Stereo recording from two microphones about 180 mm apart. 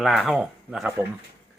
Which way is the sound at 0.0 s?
Centre (ahead or behind).